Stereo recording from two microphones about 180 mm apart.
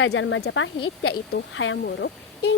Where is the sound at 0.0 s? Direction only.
90° left.